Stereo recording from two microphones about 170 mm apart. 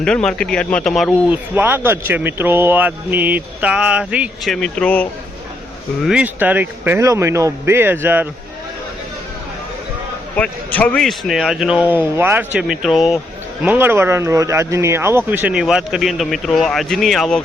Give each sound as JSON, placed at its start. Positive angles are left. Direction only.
{"t": 0.0, "sound": "speech", "side_deg": 5}
{"t": 1.3, "sound": "speech", "side_deg": -10}
{"t": 4.5, "sound": "speech", "side_deg": 5}
{"t": 6.0, "sound": "speech", "side_deg": -5}
{"t": 10.3, "sound": "speech", "side_deg": 5}